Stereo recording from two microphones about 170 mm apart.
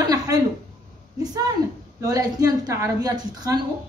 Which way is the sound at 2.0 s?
20° right (ahead or behind).